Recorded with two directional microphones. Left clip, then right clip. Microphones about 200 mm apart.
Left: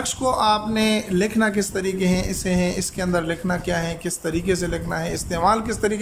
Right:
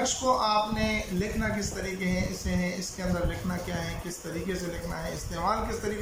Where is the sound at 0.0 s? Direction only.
55° left (ahead or behind).